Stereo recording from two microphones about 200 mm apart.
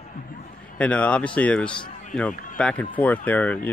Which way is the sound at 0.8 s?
5° left (ahead or behind).